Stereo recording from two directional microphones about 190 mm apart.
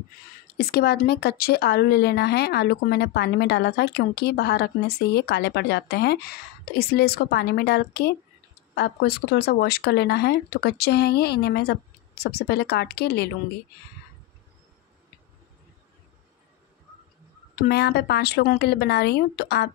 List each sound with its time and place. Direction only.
0.6 s a woman's voice: 55° left (ahead or behind)
17.6 s a woman's voice: 60° left (ahead or behind)